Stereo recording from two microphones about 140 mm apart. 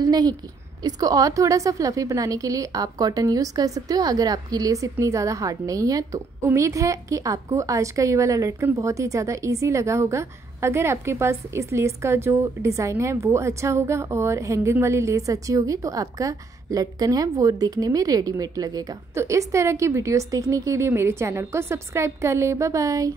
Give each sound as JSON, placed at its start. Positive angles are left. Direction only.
{"t": 0.0, "sound": "a woman's voice", "side_deg": -30}